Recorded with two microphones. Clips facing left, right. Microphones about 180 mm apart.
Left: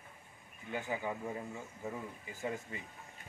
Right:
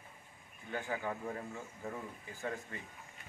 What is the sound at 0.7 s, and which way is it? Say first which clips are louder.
Speech: left 1 dB; 15° left (ahead or behind).